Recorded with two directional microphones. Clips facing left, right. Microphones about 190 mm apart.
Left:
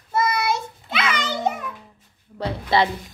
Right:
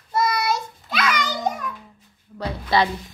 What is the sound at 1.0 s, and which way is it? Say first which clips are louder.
Children playing: even; 25° left (ahead or behind).